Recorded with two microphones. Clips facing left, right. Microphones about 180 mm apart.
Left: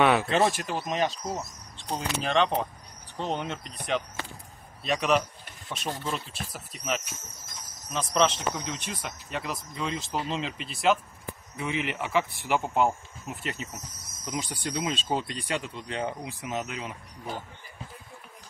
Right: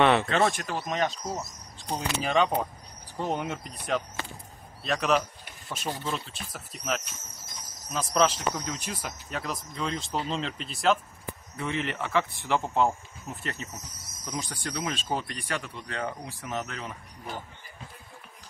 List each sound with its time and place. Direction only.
0.0 s speech: 5° left (ahead or behind)
11.5 s speech: 10° left (ahead or behind)